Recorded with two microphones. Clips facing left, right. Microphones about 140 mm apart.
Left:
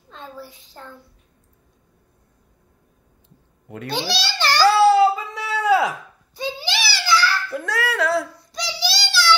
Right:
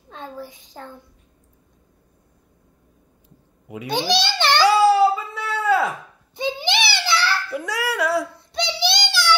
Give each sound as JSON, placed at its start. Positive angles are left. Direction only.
{"t": 0.1, "sound": "a woman's voice", "side_deg": -15}
{"t": 3.6, "sound": "a child's voice", "side_deg": -10}
{"t": 3.9, "sound": "babbling", "side_deg": -20}
{"t": 6.3, "sound": "a sound", "side_deg": -20}
{"t": 7.4, "sound": "dog", "side_deg": -10}
{"t": 8.4, "sound": "child singing", "side_deg": -25}